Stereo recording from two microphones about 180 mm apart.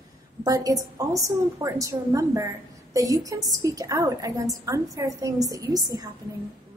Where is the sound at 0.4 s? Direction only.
20° right (ahead or behind).